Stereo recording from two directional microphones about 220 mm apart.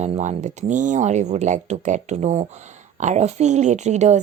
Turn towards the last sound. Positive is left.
turn(degrees=-30)  # may be behind; listen again after turning